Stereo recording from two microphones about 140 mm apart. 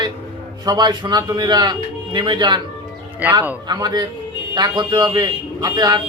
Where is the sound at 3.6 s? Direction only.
30° right (ahead or behind).